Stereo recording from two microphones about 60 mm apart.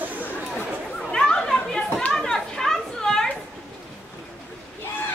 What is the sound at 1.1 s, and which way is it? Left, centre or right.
Chatter, centre.